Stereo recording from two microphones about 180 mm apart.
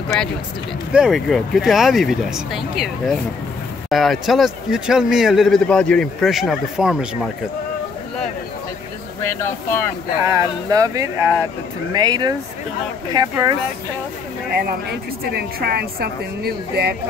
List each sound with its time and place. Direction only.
0.9 s speech: centre (ahead or behind)
9.2 s speech: 15° left (ahead or behind)
10.2 s speech: 20° right (ahead or behind)
14.6 s a woman's voice: 60° right (ahead or behind)